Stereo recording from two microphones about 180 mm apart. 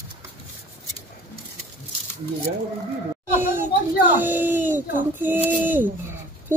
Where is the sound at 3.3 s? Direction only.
10° right (ahead or behind).